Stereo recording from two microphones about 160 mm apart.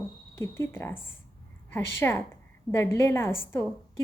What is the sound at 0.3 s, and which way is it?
Speech, 15° left (ahead or behind).